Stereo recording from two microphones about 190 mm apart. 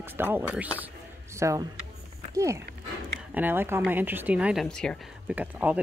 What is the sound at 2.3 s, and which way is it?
Speech, 15° right (ahead or behind).